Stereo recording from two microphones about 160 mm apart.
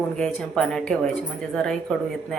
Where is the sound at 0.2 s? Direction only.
5° left (ahead or behind).